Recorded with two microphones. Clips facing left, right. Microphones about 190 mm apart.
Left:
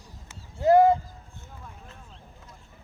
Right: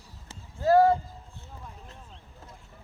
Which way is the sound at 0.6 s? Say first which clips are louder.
Left 2 dB; 20° left (ahead or behind).